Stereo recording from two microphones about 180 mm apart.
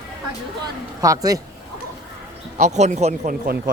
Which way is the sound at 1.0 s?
20° right (ahead or behind).